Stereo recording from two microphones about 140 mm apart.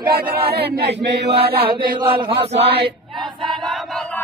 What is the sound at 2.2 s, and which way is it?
Chant, 45° right (ahead or behind).